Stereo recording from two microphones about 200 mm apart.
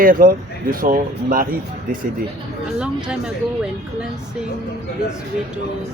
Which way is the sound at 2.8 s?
5° right (ahead or behind).